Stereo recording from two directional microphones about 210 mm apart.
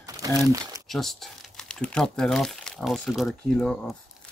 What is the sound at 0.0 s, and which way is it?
Crumpling, 15° right (ahead or behind).